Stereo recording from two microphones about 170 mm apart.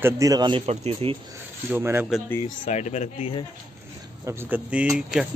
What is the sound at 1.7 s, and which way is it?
Speech, 15° right (ahead or behind).